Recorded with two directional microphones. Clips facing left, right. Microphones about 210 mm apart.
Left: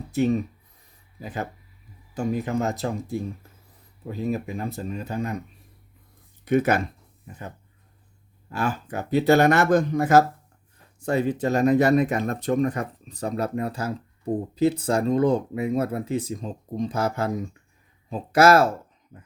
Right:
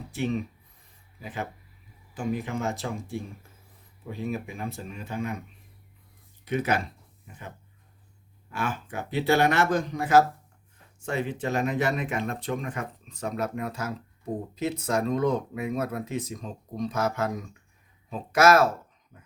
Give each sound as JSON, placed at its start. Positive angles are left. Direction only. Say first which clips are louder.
{"t": 0.1, "sound": "speech", "louder": "left 7 dB", "side_deg": 40}
{"t": 6.4, "sound": "speech", "louder": "left 6 dB", "side_deg": 50}
{"t": 8.4, "sound": "speech", "louder": "left 4 dB", "side_deg": 40}